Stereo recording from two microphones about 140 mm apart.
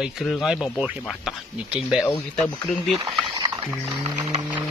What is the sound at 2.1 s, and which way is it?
Speech, 10° left (ahead or behind).